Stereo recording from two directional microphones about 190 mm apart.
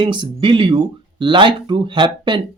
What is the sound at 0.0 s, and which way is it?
Speech, 25° right (ahead or behind).